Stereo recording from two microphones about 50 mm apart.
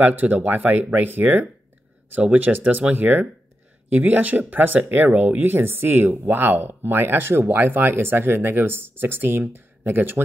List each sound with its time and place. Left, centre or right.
0.0 s speech: right